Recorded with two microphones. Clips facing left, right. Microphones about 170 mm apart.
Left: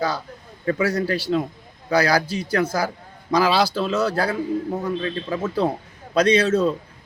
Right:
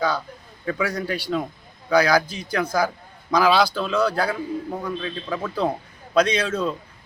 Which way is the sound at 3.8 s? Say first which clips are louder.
Even; 30° left (ahead or behind).